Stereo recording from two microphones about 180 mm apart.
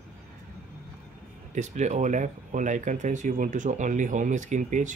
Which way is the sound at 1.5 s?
40° right (ahead or behind).